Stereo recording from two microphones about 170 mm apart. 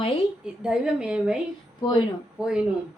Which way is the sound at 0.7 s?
5° right (ahead or behind).